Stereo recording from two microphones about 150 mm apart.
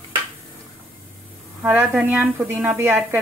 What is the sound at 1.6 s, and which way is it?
A woman's voice, 10° right (ahead or behind).